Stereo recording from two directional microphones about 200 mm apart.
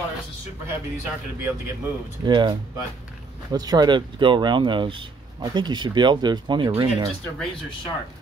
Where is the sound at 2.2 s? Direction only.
20° right (ahead or behind).